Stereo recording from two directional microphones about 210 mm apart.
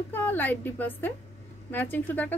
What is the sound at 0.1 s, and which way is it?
Speech, 10° left (ahead or behind).